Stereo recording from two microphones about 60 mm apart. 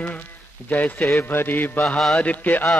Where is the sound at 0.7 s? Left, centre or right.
Left.